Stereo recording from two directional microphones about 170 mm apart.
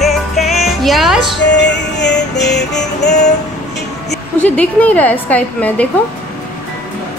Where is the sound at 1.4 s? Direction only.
90° left.